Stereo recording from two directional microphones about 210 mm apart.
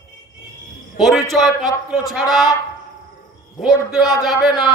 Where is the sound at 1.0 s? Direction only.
Centre (ahead or behind).